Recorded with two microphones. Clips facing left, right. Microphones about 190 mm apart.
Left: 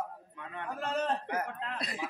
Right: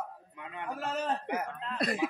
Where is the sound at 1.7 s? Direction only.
50° right (ahead or behind).